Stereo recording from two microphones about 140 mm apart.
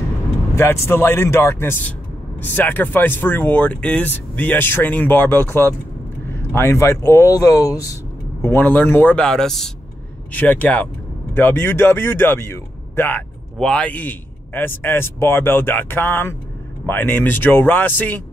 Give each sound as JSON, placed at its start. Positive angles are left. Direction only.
{"t": 0.6, "sound": "speech", "side_deg": 15}